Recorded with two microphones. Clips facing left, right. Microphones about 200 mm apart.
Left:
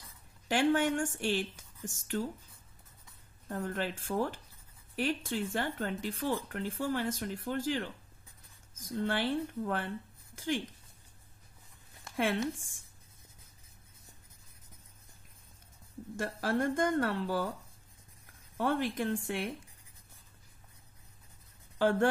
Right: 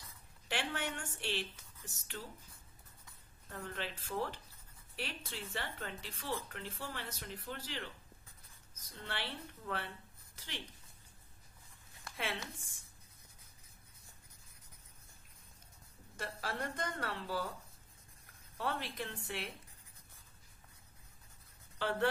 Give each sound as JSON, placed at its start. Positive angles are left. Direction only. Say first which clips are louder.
{"t": 0.5, "sound": "speech", "louder": "left 12 dB", "side_deg": 45}
{"t": 3.4, "sound": "speech", "louder": "left 8 dB", "side_deg": 45}
{"t": 12.2, "sound": "speech", "louder": "left 11 dB", "side_deg": 50}
{"t": 16.2, "sound": "speech", "louder": "left 10 dB", "side_deg": 50}
{"t": 18.6, "sound": "speech", "louder": "left 9 dB", "side_deg": 50}
{"t": 21.7, "sound": "speech", "louder": "left 7 dB", "side_deg": 50}